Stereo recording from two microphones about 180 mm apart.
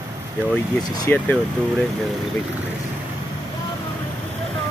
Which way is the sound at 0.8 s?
20° left (ahead or behind).